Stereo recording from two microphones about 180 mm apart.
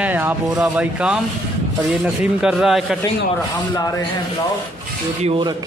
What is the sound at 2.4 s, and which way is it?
Speech, 5° right (ahead or behind).